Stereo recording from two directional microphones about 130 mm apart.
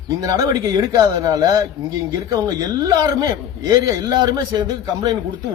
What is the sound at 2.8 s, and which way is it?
Speech, 30° right (ahead or behind).